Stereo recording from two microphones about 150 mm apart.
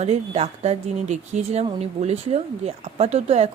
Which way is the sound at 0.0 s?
45° right (ahead or behind).